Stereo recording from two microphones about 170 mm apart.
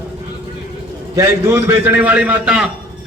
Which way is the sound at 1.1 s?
15° right (ahead or behind).